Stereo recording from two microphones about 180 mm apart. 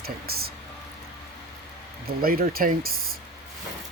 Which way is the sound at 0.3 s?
60° right (ahead or behind).